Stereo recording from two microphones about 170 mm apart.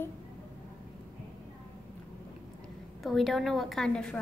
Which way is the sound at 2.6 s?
Centre (ahead or behind).